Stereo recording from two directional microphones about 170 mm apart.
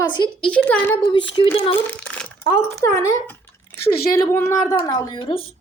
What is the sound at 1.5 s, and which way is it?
Speech, 35° left (ahead or behind).